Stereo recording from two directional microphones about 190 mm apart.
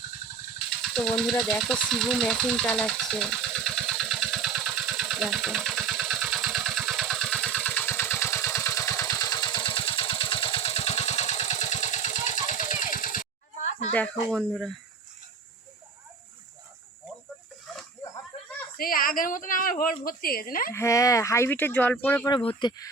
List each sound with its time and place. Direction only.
0.8 s a sound: centre (ahead or behind); by 13.9 s 35° left (ahead or behind)
13.9 s speech: 5° left (ahead or behind)
18.8 s a woman's voice: 50° left (ahead or behind)
20.7 s speech: 15° left (ahead or behind)
22.3 s speech: 25° left (ahead or behind)